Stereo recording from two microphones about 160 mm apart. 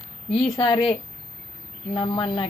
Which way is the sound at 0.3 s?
Centre (ahead or behind).